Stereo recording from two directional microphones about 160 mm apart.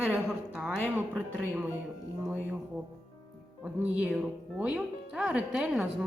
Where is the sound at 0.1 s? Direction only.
5° right (ahead or behind).